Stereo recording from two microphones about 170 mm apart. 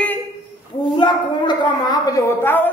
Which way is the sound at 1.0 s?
25° left (ahead or behind).